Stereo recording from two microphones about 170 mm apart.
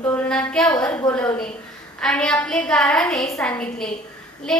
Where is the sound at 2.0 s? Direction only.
5° left (ahead or behind).